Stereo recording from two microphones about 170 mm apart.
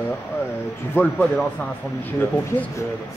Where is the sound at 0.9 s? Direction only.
5° left (ahead or behind).